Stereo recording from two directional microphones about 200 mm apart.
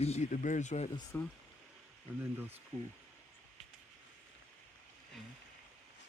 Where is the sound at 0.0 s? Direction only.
35° left (ahead or behind).